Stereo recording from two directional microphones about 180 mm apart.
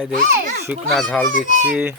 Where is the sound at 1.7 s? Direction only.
10° right (ahead or behind).